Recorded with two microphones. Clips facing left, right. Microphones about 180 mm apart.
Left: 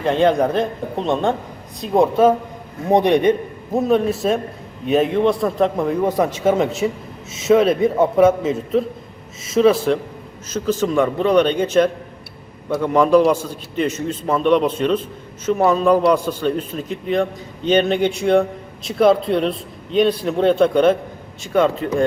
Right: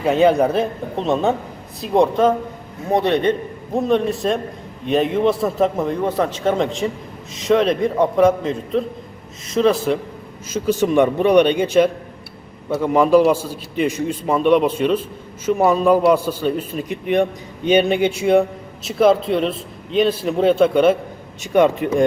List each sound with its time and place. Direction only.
0.0 s a man's voice: 5° right (ahead or behind)
6.0 s a man's voice: 10° left (ahead or behind)
10.5 s a man's voice: 15° right (ahead or behind)
21.4 s a man's voice: 15° right (ahead or behind)